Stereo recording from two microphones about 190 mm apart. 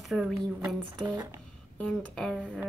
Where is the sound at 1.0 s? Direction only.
20° right (ahead or behind).